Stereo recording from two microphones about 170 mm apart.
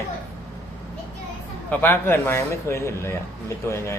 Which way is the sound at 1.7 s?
10° left (ahead or behind).